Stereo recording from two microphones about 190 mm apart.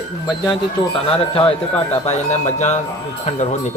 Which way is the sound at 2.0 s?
35° left (ahead or behind).